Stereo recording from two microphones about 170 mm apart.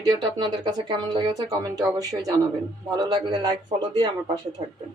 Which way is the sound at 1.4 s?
20° right (ahead or behind).